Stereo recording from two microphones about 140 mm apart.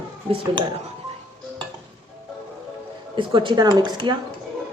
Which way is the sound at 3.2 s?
35° right (ahead or behind).